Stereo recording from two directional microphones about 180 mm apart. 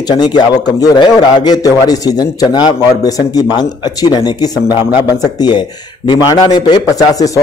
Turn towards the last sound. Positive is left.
turn(degrees=20)  # may be behind; listen again after turning